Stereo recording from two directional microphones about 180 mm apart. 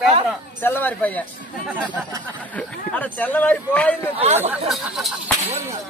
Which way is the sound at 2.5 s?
10° left (ahead or behind).